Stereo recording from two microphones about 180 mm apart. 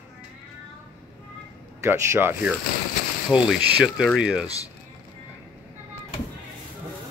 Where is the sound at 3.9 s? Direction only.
Centre (ahead or behind).